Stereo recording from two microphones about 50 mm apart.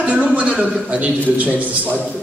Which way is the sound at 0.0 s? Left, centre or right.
Right.